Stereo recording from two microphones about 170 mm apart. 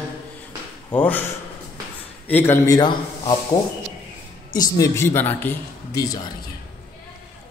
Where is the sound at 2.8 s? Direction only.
25° left (ahead or behind).